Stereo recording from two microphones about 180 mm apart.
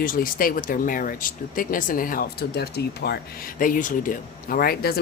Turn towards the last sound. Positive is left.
turn(degrees=55)  # may be behind; listen again after turning